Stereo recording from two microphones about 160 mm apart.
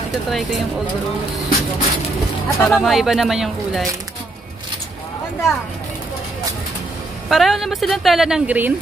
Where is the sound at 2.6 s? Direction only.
Centre (ahead or behind).